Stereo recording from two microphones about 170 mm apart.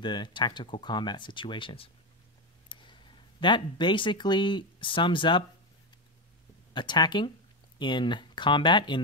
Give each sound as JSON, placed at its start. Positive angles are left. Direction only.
{"t": 0.0, "sound": "speech", "side_deg": 25}
{"t": 6.7, "sound": "speech", "side_deg": 25}